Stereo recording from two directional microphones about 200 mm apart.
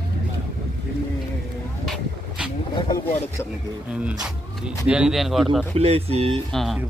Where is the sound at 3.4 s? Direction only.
15° left (ahead or behind).